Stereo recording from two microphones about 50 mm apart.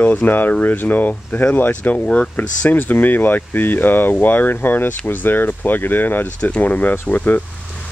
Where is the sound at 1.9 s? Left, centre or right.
Left.